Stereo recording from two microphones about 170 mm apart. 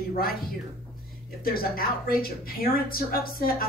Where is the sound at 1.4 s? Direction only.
60° left (ahead or behind).